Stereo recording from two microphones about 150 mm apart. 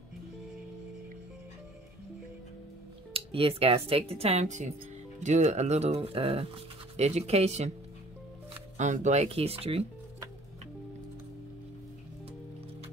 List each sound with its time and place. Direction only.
3.1 s speech: 40° right (ahead or behind)
8.7 s speech: 55° right (ahead or behind)